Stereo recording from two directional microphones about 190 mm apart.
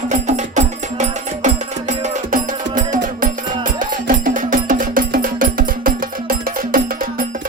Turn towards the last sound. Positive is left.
turn(degrees=-50)  # may be behind; listen again after turning